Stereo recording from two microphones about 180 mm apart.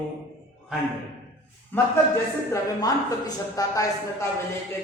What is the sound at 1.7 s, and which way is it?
A man's voice, 10° left (ahead or behind).